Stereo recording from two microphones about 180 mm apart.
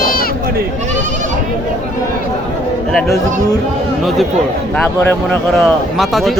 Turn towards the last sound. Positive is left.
turn(degrees=0)  # may be behind; listen again after turning